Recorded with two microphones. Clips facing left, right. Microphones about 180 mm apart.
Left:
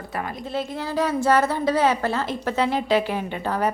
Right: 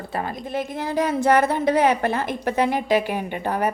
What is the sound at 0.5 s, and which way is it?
A woman's voice, 15° right (ahead or behind).